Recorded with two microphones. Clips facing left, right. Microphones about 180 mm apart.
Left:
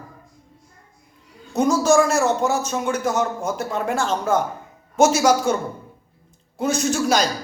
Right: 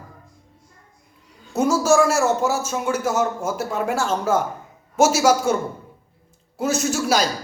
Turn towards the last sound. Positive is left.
turn(degrees=-5)  # may be behind; listen again after turning